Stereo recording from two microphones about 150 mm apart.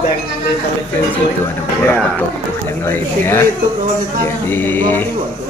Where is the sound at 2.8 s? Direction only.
15° left (ahead or behind).